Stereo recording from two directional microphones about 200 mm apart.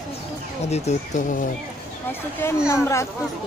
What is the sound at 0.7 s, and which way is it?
Speech, 35° left (ahead or behind).